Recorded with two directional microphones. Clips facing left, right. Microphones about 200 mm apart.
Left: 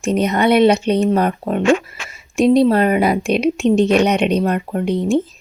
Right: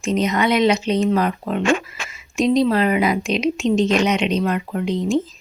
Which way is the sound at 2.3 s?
60° left (ahead or behind).